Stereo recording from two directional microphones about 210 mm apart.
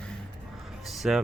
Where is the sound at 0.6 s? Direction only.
Centre (ahead or behind).